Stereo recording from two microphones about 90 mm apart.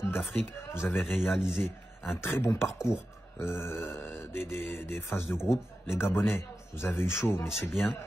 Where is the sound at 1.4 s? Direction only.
5° right (ahead or behind).